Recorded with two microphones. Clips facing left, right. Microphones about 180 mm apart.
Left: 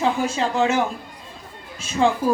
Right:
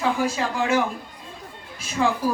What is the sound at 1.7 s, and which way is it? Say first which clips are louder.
Speech: left 4 dB; 25° left (ahead or behind).